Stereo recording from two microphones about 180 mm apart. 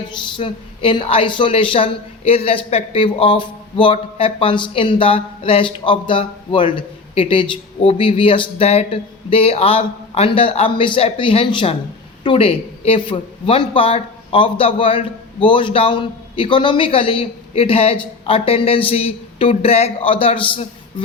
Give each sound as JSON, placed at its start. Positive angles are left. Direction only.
{"t": 0.3, "sound": "a woman's voice", "side_deg": 30}